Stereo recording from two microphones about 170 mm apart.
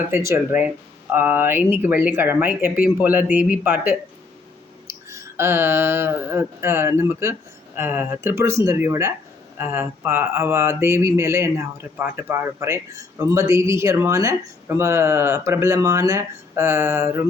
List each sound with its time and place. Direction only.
0.1 s speech: 15° right (ahead or behind)
4.9 s mantra: 15° right (ahead or behind)
7.8 s speech: 10° right (ahead or behind)